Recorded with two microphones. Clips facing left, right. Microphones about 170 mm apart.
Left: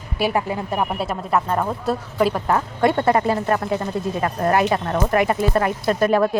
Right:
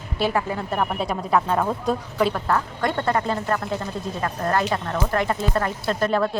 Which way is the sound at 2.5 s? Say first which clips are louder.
Left 4 dB; 20° left (ahead or behind).